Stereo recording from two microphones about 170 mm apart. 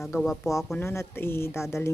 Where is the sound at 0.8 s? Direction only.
15° left (ahead or behind).